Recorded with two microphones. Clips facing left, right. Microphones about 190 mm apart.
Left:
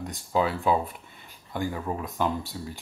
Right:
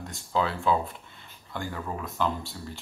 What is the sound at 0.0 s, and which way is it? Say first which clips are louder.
Speech: left 2 dB; 15° left (ahead or behind).